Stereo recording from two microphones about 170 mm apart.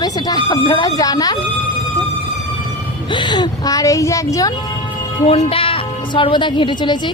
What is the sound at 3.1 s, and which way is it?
Speech, 25° left (ahead or behind).